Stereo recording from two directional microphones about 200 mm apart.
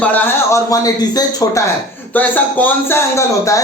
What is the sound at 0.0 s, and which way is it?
Speech, 10° left (ahead or behind).